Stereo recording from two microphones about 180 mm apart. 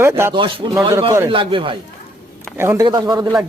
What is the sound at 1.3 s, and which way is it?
Speech, 30° right (ahead or behind).